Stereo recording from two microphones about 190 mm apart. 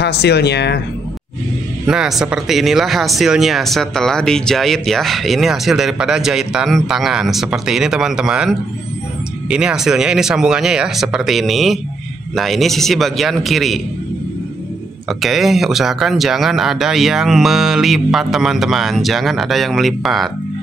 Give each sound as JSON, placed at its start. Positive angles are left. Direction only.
{"t": 0.0, "sound": "speech", "side_deg": 60}
{"t": 1.9, "sound": "speech", "side_deg": -5}
{"t": 15.0, "sound": "speech", "side_deg": 0}